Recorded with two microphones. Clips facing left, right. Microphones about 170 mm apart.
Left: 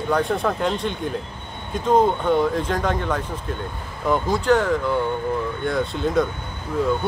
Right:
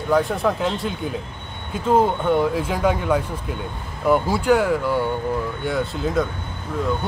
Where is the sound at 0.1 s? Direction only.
Centre (ahead or behind).